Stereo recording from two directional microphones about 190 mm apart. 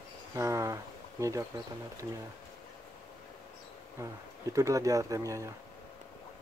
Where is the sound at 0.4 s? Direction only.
15° right (ahead or behind).